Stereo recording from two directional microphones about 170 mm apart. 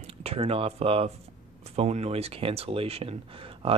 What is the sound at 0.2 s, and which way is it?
Speech, 35° right (ahead or behind).